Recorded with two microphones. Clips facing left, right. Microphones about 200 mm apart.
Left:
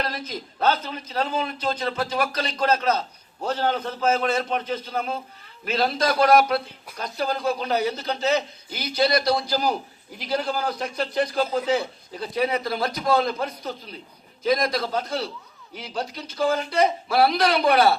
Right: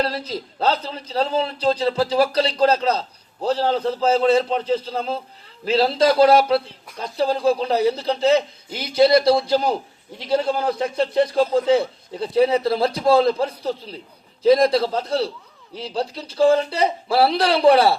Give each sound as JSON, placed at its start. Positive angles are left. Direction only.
{"t": 0.0, "sound": "a man's voice", "side_deg": -30}